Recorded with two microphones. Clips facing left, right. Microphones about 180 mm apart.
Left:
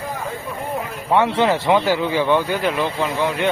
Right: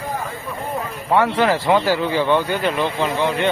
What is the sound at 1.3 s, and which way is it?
Speech, 25° left (ahead or behind).